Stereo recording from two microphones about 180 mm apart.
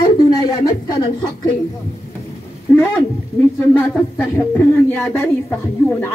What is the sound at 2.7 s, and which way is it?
Speech, 10° left (ahead or behind).